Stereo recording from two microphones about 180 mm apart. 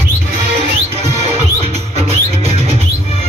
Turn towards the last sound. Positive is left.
turn(degrees=-35)  # may be behind; listen again after turning